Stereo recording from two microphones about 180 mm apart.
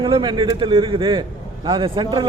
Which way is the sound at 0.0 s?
25° right (ahead or behind).